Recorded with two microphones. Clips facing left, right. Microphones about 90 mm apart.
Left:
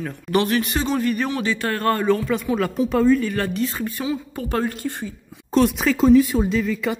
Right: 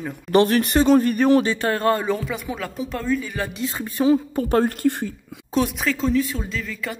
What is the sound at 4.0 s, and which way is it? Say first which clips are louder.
A woman's voice: right 11 dB; 40° right (ahead or behind).